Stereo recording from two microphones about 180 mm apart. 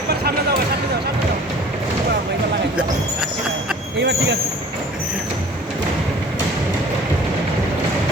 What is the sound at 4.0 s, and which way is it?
Speech, 70° right (ahead or behind).